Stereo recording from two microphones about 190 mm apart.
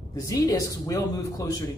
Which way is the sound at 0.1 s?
20° left (ahead or behind).